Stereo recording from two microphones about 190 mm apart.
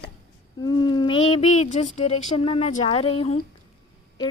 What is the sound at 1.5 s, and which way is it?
A woman's voice, 35° left (ahead or behind).